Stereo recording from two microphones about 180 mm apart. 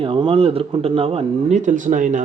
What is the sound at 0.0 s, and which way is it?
Speech, 30° right (ahead or behind).